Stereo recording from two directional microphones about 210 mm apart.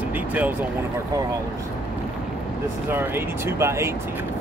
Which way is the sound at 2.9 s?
10° right (ahead or behind).